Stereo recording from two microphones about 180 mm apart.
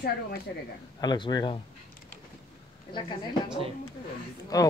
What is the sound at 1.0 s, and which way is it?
Speech, 20° left (ahead or behind).